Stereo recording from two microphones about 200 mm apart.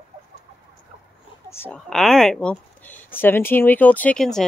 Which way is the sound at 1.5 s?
10° left (ahead or behind).